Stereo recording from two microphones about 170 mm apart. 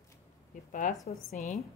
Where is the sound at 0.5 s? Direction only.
50° left (ahead or behind).